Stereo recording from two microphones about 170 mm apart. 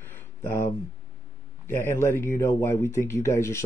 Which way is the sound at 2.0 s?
15° left (ahead or behind).